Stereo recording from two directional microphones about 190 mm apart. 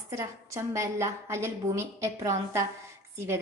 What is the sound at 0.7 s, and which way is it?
A woman's voice, 15° right (ahead or behind).